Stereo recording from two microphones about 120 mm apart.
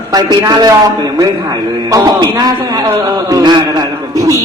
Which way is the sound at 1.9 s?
35° right (ahead or behind).